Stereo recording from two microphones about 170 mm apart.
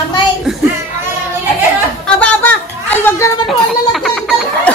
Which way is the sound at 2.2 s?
10° left (ahead or behind).